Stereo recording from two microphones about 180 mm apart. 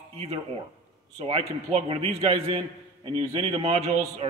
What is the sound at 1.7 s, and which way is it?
A man's voice, 35° right (ahead or behind).